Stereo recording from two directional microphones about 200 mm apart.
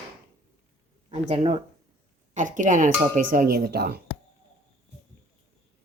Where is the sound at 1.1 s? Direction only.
30° right (ahead or behind); by 4.0 s 50° right (ahead or behind).